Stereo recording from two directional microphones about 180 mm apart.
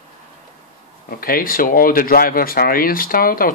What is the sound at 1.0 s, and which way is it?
Speech, 55° left (ahead or behind).